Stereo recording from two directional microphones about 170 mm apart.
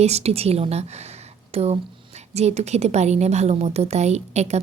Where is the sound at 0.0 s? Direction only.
40° right (ahead or behind).